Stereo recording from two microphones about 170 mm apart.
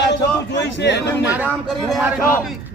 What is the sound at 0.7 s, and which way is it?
Speech, 90° left.